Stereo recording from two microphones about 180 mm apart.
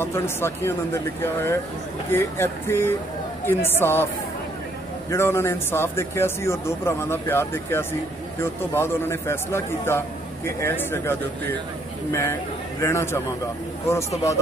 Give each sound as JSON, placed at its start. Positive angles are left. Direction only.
{"t": 0.0, "sound": "a man's voice", "side_deg": 15}
{"t": 5.1, "sound": "a man's voice", "side_deg": 15}